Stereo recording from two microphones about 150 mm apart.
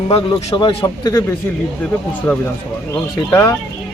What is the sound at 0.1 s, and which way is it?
Speech, 40° left (ahead or behind).